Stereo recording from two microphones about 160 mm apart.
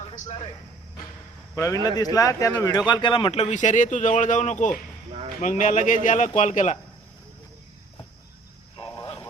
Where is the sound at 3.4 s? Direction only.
50° left (ahead or behind).